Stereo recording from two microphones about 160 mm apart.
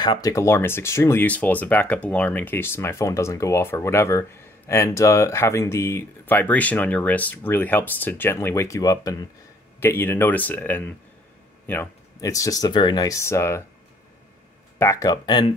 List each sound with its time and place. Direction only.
0.0 s speech: 25° left (ahead or behind)
14.8 s speech: 20° left (ahead or behind)